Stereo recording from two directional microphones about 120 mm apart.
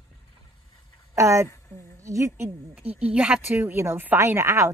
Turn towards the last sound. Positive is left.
turn(degrees=-25)  # may be behind; listen again after turning